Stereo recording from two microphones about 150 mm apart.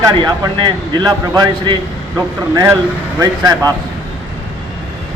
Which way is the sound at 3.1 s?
25° right (ahead or behind).